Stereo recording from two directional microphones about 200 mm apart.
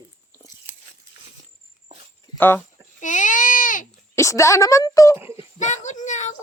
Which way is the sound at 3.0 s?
40° left (ahead or behind).